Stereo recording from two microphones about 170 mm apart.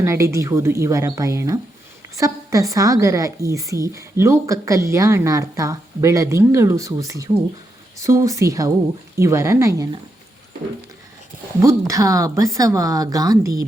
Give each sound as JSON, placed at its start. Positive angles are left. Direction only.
{"t": 0.0, "sound": "a woman's voice", "side_deg": -15}
{"t": 11.6, "sound": "a woman's voice", "side_deg": -20}